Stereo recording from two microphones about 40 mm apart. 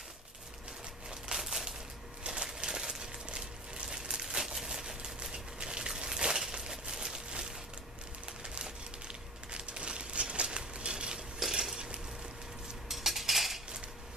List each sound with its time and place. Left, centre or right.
1.3 s a sound: centre
11.7 s stir: centre
12.8 s cutlery: centre